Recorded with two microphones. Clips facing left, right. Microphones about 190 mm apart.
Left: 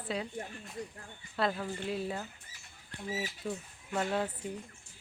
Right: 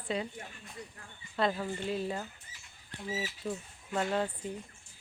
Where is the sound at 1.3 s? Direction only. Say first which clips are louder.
Right 1 dB; centre (ahead or behind).